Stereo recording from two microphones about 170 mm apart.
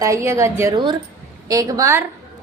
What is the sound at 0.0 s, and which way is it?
A woman's voice, 15° right (ahead or behind).